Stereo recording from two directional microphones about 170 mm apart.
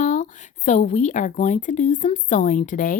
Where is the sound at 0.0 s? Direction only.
45° left (ahead or behind).